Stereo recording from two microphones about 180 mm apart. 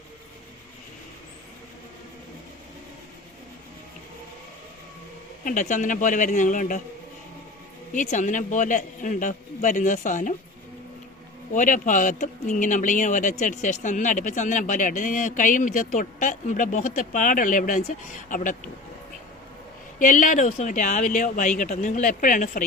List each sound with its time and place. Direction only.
5.5 s speech: 45° left (ahead or behind)
8.1 s speech: 45° left (ahead or behind)
11.5 s speech: 45° left (ahead or behind)
20.0 s speech: 45° left (ahead or behind)